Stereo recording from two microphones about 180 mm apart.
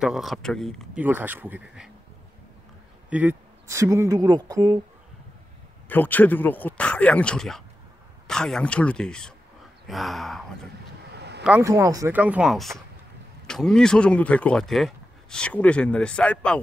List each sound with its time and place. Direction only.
0.0 s speech: centre (ahead or behind)
0.9 s a woman's voice: 10° right (ahead or behind)
3.1 s a woman's voice: 10° right (ahead or behind)
5.9 s speech: 10° left (ahead or behind)
11.1 s a sound: 70° right (ahead or behind)
11.6 s a woman's voice: 20° right (ahead or behind); by 16.6 s 5° left (ahead or behind)